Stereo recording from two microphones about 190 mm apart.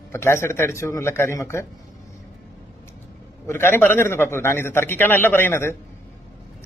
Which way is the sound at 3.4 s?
15° left (ahead or behind).